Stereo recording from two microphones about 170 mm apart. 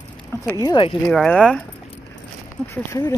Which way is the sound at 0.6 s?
30° left (ahead or behind).